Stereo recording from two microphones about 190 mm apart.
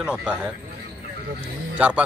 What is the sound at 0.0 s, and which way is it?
Speech, 5° right (ahead or behind).